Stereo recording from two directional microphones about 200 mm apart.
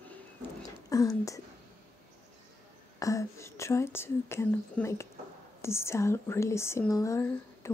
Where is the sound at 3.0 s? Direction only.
15° left (ahead or behind).